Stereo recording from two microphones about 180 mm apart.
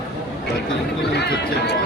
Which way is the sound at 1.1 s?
65° left (ahead or behind).